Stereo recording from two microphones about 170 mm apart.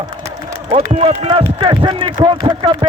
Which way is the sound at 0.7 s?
35° right (ahead or behind).